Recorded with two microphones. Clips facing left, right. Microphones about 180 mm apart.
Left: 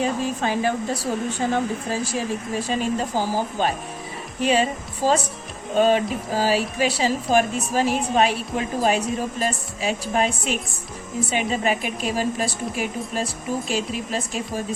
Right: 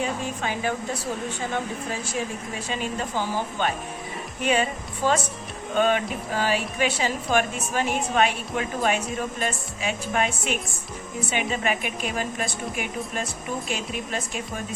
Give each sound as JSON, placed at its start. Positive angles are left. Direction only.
{"t": 0.0, "sound": "speech", "side_deg": 35}
{"t": 2.6, "sound": "speech", "side_deg": 40}